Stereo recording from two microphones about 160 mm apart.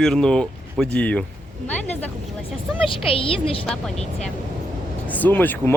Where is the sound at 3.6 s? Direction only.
5° left (ahead or behind).